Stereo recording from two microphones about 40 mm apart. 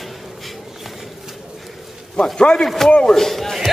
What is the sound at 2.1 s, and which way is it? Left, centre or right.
A man's voice, left.